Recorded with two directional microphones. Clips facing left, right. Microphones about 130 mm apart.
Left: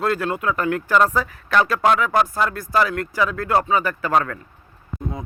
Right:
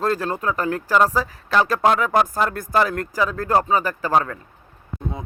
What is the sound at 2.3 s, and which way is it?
Speech, 50° right (ahead or behind).